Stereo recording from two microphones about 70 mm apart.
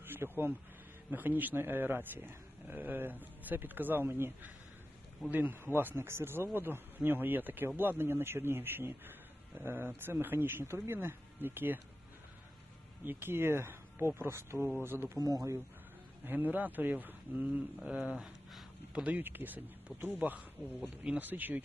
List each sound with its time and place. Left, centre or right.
0.0 s a sound: right
1.1 s speech: right
13.1 s speech: right
15.2 s speech: right
16.2 s speech: right
17.8 s a sound: centre
19.2 s speech: right